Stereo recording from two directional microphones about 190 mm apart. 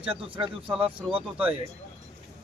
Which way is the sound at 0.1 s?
30° right (ahead or behind).